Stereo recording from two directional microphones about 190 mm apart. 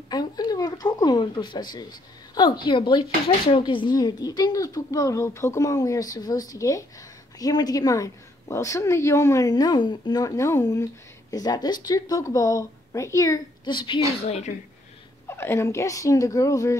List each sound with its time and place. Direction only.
0.1 s a woman's voice: 20° left (ahead or behind)
15.2 s speech: 15° left (ahead or behind)